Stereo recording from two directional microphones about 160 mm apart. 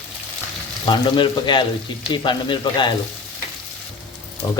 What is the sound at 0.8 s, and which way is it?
Speech, 30° left (ahead or behind).